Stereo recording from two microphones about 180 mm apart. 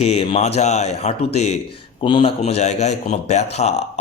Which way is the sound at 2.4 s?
40° left (ahead or behind).